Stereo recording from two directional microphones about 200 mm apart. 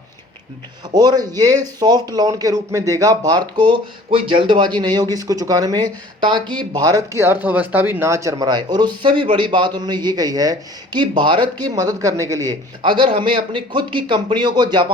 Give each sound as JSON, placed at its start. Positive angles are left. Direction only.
{"t": 0.9, "sound": "speech", "side_deg": -20}